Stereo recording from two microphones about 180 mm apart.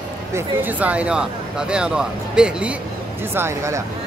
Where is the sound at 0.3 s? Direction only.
10° right (ahead or behind).